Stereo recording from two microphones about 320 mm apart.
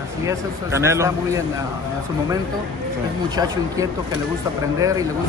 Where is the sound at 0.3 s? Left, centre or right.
Centre.